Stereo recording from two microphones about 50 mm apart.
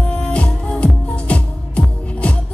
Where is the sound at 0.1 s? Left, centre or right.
Left.